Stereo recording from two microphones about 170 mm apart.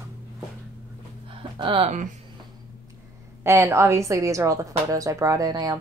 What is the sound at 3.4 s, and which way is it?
A woman's voice, 15° right (ahead or behind).